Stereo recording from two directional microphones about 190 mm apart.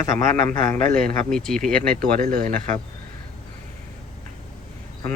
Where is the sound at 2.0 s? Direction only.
45° right (ahead or behind).